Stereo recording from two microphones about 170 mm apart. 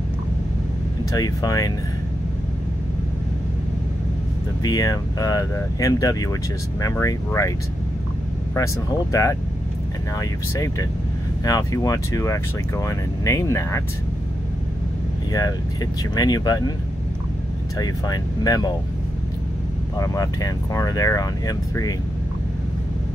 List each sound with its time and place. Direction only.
1.1 s speech: 20° left (ahead or behind)
4.6 s speech: 20° left (ahead or behind)
9.1 s speech: 20° left (ahead or behind)
15.3 s speech: 20° left (ahead or behind)
17.7 s speech: 20° left (ahead or behind)
20.0 s speech: 20° left (ahead or behind)